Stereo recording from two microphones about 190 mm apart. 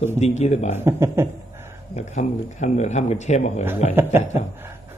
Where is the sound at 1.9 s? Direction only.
40° left (ahead or behind).